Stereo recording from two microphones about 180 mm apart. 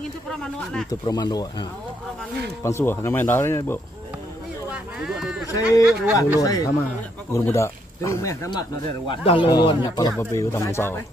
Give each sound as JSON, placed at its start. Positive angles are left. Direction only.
{"t": 0.8, "sound": "speech", "side_deg": 20}
{"t": 5.0, "sound": "speech", "side_deg": 0}
{"t": 6.1, "sound": "speech", "side_deg": 20}
{"t": 9.1, "sound": "speech", "side_deg": 30}